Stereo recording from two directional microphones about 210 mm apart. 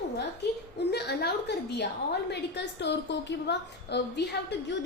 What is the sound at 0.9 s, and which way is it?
A woman's voice, 50° left (ahead or behind).